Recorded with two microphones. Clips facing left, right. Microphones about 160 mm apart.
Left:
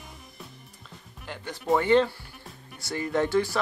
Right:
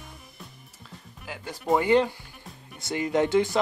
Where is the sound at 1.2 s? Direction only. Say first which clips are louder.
Even; 10° right (ahead or behind).